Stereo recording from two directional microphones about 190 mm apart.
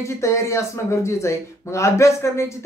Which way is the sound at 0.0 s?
15° left (ahead or behind).